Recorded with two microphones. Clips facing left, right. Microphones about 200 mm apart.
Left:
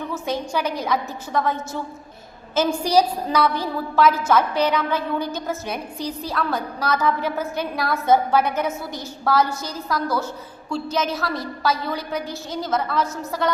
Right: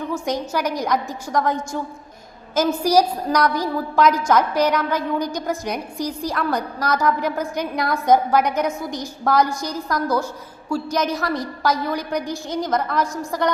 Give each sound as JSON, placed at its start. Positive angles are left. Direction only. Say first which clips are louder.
{"t": 0.1, "sound": "a woman's voice", "louder": "right 2 dB", "side_deg": -10}